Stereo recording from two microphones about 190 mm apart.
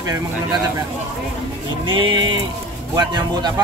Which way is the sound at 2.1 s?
25° right (ahead or behind).